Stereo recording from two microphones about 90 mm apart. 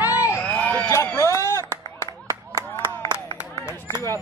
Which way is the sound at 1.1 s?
30° left (ahead or behind).